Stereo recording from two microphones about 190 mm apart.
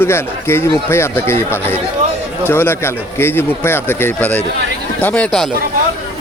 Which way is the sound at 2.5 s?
10° left (ahead or behind).